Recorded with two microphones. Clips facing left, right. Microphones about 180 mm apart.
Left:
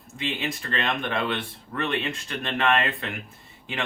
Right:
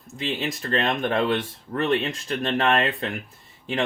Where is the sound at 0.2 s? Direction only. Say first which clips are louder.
Right 2 dB; 35° right (ahead or behind).